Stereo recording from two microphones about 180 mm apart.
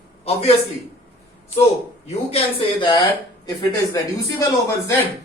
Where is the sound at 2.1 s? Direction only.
30° left (ahead or behind).